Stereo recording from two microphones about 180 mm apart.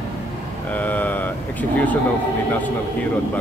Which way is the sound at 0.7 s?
10° left (ahead or behind).